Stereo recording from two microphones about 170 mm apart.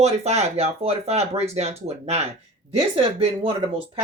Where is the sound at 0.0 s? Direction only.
40° right (ahead or behind).